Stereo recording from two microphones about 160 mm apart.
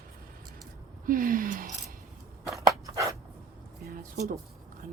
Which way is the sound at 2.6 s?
20° right (ahead or behind).